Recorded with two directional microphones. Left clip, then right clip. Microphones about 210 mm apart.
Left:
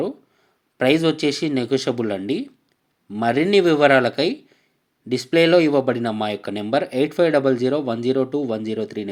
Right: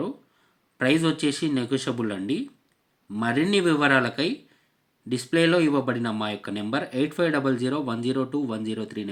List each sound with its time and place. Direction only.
1.2 s speech: 10° left (ahead or behind)